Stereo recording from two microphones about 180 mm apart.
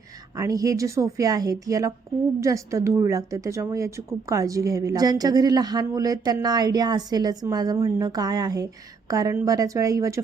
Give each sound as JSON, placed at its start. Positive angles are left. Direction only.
{"t": 0.3, "sound": "a woman's voice", "side_deg": -20}